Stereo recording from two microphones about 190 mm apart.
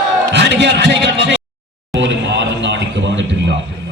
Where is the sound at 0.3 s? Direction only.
65° right (ahead or behind).